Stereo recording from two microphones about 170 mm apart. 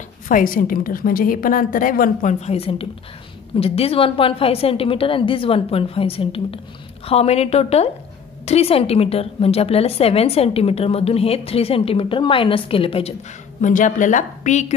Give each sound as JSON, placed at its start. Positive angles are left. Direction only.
{"t": 0.3, "sound": "a woman's voice", "side_deg": 55}
{"t": 13.6, "sound": "a woman's voice", "side_deg": 45}